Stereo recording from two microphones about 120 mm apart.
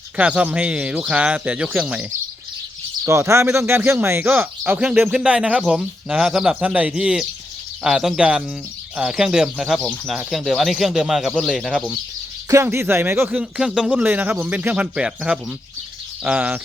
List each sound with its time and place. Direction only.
0.2 s speech: 10° right (ahead or behind)
3.0 s speech: 25° right (ahead or behind); by 11.8 s centre (ahead or behind)
12.5 s speech: 25° right (ahead or behind)
13.4 s speech: 5° right (ahead or behind)